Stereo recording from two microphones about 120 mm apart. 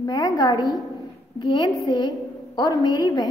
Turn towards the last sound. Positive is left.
turn(degrees=35)  # may be behind; listen again after turning